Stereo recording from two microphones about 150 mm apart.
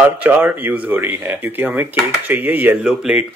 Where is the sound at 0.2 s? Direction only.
10° right (ahead or behind).